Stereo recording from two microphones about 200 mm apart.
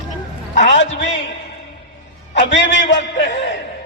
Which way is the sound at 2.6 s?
60° left (ahead or behind).